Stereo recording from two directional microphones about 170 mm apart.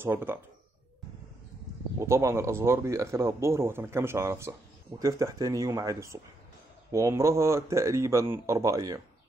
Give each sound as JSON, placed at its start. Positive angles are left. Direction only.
{"t": 0.0, "sound": "speech", "side_deg": -15}
{"t": 2.0, "sound": "speech", "side_deg": -15}